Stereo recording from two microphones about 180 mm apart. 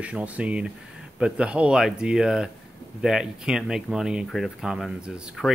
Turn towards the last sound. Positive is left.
turn(degrees=-5)  # may be behind; listen again after turning